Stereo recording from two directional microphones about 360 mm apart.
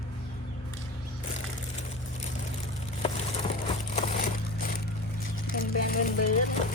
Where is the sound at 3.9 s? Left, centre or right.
Left.